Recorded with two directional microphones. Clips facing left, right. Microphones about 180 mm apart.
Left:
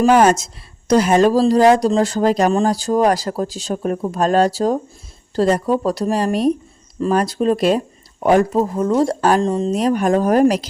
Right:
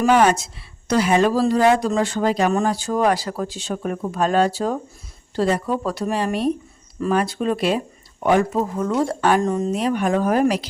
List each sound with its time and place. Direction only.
0.0 s speech: 40° left (ahead or behind)
9.4 s speech: 25° left (ahead or behind)
9.7 s speech: 40° left (ahead or behind)